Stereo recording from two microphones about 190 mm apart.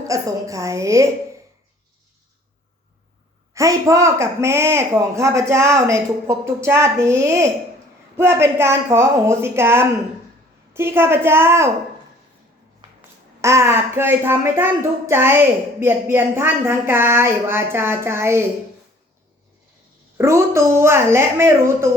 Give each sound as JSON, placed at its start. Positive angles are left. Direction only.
{"t": 0.1, "sound": "speech", "side_deg": -15}
{"t": 3.5, "sound": "speech", "side_deg": -15}
{"t": 13.4, "sound": "speech", "side_deg": -15}
{"t": 20.1, "sound": "speech", "side_deg": -15}